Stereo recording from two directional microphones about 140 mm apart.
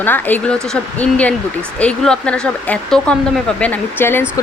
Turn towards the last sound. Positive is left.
turn(degrees=15)  # may be behind; listen again after turning